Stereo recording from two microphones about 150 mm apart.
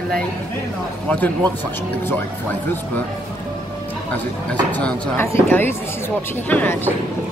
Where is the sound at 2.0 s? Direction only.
15° left (ahead or behind).